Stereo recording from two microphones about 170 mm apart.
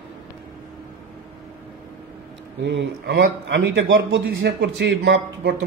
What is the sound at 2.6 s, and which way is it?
A man's voice, 90° right.